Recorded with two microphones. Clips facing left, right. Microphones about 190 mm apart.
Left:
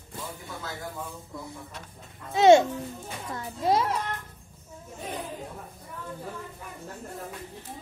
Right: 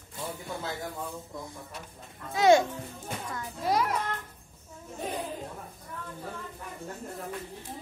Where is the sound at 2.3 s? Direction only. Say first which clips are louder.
Left 4 dB; 25° left (ahead or behind).